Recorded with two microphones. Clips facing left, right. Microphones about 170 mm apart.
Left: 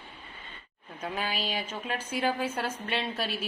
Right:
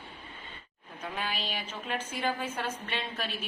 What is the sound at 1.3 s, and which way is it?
Speech, 10° left (ahead or behind).